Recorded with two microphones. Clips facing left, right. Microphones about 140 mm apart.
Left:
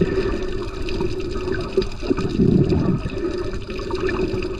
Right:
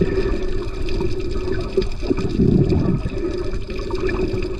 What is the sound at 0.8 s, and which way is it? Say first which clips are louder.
Water: even; 15° left (ahead or behind).